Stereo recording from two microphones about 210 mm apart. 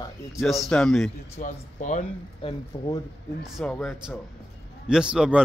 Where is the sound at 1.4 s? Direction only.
35° left (ahead or behind).